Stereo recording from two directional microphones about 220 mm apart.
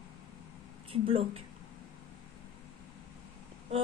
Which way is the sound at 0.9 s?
25° right (ahead or behind).